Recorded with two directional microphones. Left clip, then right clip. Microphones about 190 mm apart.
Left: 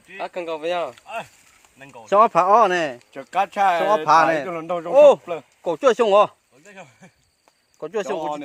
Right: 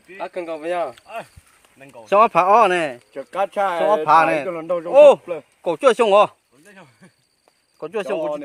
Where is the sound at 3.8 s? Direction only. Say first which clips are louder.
Right 4 dB; 10° right (ahead or behind).